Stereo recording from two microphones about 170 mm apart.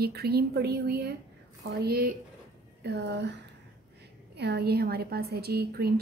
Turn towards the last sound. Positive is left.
turn(degrees=-65)  # may be behind; listen again after turning